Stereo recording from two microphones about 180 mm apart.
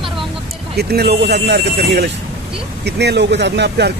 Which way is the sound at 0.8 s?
65° right (ahead or behind).